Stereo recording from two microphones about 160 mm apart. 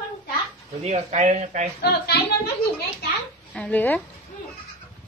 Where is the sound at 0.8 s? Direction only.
45° right (ahead or behind).